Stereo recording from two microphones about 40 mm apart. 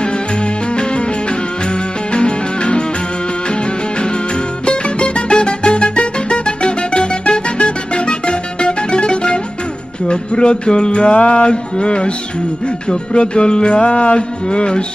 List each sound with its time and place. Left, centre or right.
0.0 s music: left